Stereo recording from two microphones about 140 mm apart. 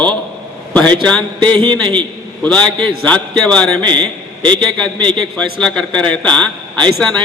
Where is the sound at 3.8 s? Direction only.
30° right (ahead or behind).